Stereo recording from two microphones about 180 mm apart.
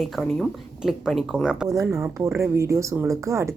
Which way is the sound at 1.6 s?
20° right (ahead or behind).